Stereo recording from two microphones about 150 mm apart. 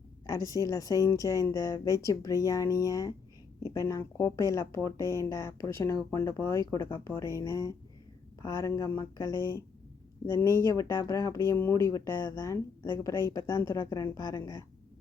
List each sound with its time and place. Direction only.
0.3 s speech: 25° left (ahead or behind)